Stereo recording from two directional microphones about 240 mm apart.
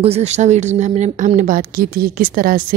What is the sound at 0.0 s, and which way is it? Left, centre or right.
A woman's voice, right.